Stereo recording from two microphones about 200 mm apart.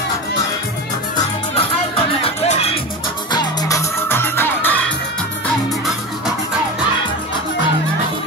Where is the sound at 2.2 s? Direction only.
30° left (ahead or behind).